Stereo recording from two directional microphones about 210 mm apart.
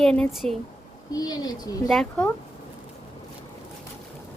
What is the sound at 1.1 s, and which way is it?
Speech, 20° left (ahead or behind).